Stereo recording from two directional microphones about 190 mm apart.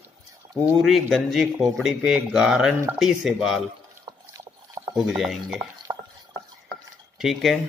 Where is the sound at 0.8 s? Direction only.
Centre (ahead or behind).